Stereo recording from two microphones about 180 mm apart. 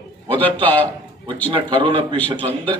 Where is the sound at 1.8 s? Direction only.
30° right (ahead or behind).